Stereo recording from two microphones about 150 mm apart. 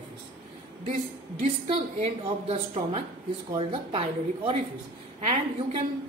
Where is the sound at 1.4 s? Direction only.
45° right (ahead or behind).